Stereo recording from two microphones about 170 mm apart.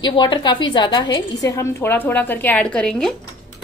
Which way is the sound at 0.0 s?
25° left (ahead or behind).